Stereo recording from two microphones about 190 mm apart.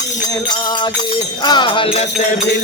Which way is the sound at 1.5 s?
25° left (ahead or behind).